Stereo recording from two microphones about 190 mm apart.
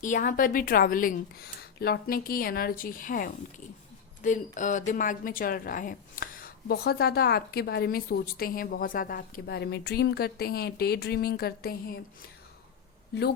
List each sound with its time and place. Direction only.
0.0 s a woman's voice: 45° left (ahead or behind)